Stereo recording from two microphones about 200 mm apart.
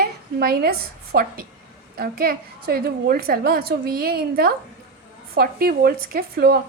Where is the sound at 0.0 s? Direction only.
50° right (ahead or behind).